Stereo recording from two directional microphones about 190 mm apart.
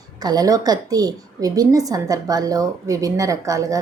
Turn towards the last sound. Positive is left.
turn(degrees=-15)  # may be behind; listen again after turning